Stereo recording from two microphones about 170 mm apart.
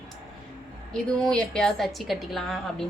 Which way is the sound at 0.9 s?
5° left (ahead or behind).